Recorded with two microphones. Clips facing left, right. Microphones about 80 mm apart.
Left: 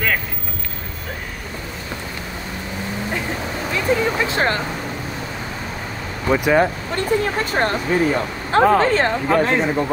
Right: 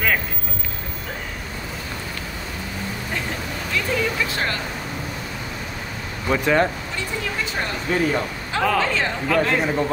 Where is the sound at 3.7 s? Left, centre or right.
Left.